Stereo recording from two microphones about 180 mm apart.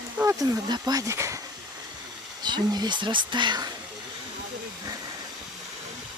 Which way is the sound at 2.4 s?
25° right (ahead or behind).